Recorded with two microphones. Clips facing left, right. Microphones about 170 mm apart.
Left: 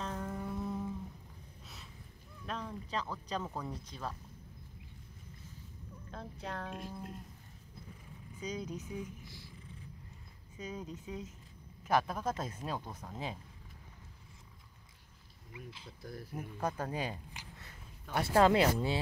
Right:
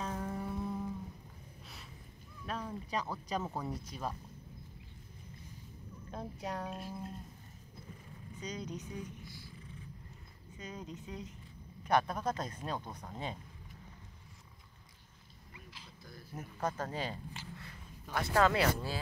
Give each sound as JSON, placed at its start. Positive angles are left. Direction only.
{"t": 0.0, "sound": "a sound", "side_deg": -5}
{"t": 2.4, "sound": "speech", "side_deg": -5}
{"t": 6.4, "sound": "speech", "side_deg": -10}
{"t": 8.4, "sound": "speech", "side_deg": 10}
{"t": 10.6, "sound": "speech", "side_deg": 5}
{"t": 15.5, "sound": "speech", "side_deg": 25}
{"t": 16.3, "sound": "speech", "side_deg": 10}